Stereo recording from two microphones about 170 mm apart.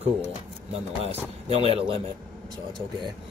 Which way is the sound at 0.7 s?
40° right (ahead or behind).